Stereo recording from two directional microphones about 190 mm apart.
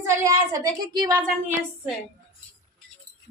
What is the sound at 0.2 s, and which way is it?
Speech, 20° right (ahead or behind).